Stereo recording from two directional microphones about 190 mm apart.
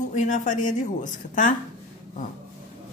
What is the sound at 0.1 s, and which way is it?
Speech, 40° left (ahead or behind).